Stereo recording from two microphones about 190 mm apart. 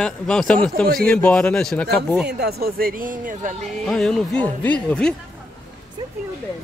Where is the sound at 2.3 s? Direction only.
55° right (ahead or behind).